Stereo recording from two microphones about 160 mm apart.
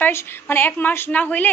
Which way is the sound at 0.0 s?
15° left (ahead or behind).